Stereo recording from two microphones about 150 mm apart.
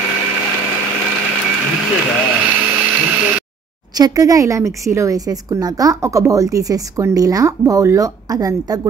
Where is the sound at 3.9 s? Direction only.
25° right (ahead or behind).